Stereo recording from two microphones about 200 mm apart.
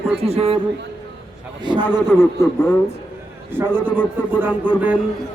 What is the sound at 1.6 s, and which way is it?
Speech, 25° right (ahead or behind).